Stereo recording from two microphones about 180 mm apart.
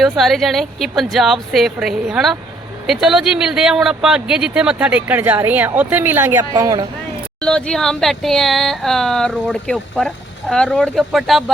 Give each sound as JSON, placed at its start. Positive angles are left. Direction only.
{"t": 0.0, "sound": "speech", "side_deg": 0}
{"t": 7.4, "sound": "speech", "side_deg": 5}